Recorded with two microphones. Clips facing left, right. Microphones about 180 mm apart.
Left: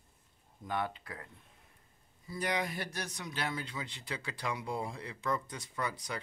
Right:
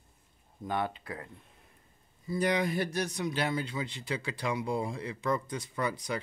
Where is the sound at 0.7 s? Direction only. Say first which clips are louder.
Right 3 dB; 25° right (ahead or behind).